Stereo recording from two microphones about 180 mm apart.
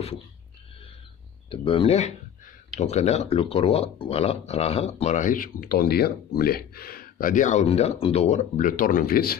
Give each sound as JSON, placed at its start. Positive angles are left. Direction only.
{"t": 1.5, "sound": "speech", "side_deg": 30}